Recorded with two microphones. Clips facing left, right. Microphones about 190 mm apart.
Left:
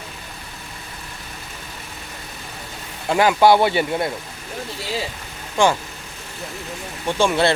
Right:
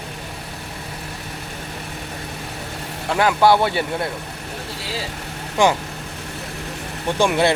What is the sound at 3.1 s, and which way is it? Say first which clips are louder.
Speech: left 1 dB; 10° left (ahead or behind).